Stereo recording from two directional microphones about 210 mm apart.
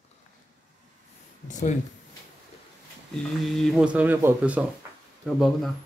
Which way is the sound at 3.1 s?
Centre (ahead or behind).